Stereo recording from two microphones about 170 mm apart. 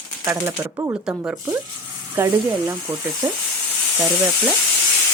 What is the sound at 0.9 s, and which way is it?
Speech, 5° right (ahead or behind).